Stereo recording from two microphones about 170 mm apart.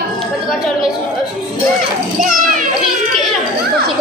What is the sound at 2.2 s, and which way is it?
Speech, 50° right (ahead or behind).